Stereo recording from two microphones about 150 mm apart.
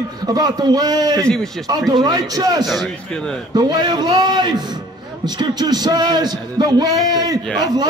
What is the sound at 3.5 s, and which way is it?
A man's voice, 30° right (ahead or behind).